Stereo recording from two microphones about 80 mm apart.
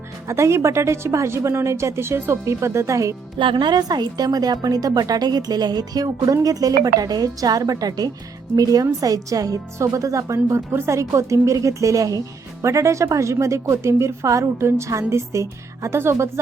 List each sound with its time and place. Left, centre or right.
0.3 s speech: right
3.3 s a woman's voice: right